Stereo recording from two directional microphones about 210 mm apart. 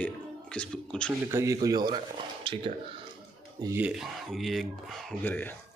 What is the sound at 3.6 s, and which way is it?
Speech, 10° right (ahead or behind).